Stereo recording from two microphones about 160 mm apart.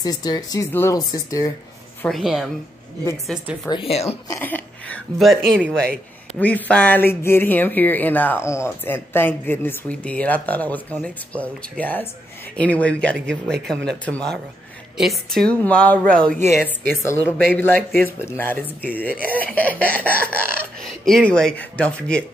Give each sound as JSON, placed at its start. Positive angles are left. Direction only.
{"t": 0.0, "sound": "speech", "side_deg": 25}
{"t": 2.0, "sound": "speech", "side_deg": 0}
{"t": 3.6, "sound": "speech", "side_deg": 35}
{"t": 4.3, "sound": "a woman's voice", "side_deg": 10}